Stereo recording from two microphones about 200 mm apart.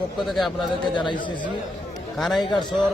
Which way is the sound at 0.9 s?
25° left (ahead or behind).